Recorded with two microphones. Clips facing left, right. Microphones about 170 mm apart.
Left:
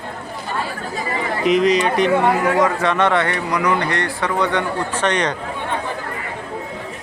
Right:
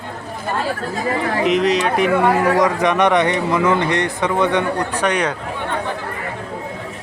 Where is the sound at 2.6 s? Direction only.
15° right (ahead or behind).